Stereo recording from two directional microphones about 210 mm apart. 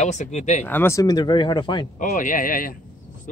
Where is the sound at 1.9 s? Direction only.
40° left (ahead or behind).